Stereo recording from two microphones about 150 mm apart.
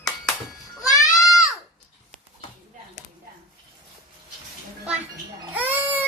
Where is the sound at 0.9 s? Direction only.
25° left (ahead or behind).